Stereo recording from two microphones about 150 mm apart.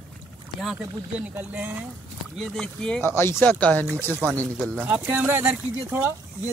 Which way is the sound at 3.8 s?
15° right (ahead or behind).